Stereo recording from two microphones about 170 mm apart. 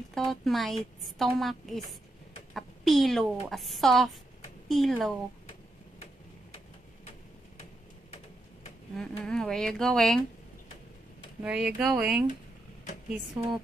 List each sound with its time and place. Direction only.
0.3 s a woman's voice: centre (ahead or behind)
8.9 s a woman's voice: 5° left (ahead or behind)
11.4 s a woman's voice: 5° right (ahead or behind)
13.4 s a woman's voice: 25° right (ahead or behind)